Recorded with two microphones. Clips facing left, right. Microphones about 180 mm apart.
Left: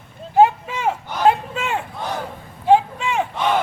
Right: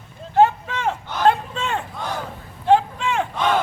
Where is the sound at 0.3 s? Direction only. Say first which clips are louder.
Left 2 dB; 10° left (ahead or behind).